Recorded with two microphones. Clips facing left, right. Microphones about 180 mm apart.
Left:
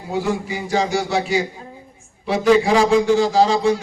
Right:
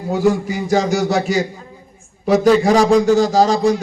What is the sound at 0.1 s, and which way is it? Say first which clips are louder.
A man's voice: right 6 dB; 45° right (ahead or behind).